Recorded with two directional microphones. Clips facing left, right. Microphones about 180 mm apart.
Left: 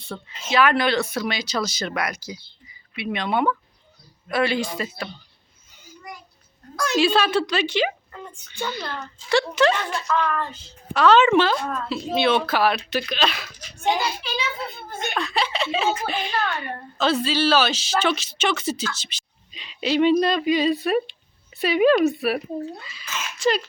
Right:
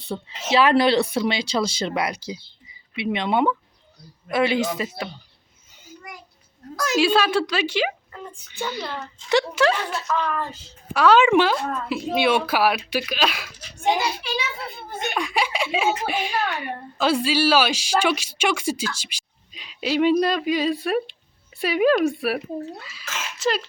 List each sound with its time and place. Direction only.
0.1 s speech: 20° right (ahead or behind)
0.5 s speech: 30° right (ahead or behind)
6.7 s a woman's voice: 5° right (ahead or behind)